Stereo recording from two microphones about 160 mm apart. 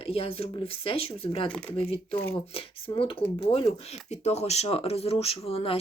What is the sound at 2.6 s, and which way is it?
Speech, 35° left (ahead or behind).